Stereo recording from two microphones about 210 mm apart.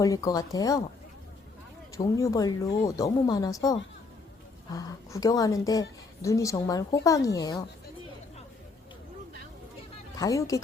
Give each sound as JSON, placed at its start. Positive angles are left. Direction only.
{"t": 0.0, "sound": "speech", "side_deg": 15}
{"t": 2.0, "sound": "speech", "side_deg": 15}
{"t": 10.2, "sound": "speech", "side_deg": 15}